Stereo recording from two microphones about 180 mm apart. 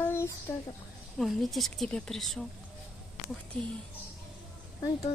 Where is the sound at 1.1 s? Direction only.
Centre (ahead or behind).